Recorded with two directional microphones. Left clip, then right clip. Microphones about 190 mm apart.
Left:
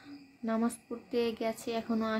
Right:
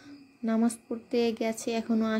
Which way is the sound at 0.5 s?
20° right (ahead or behind).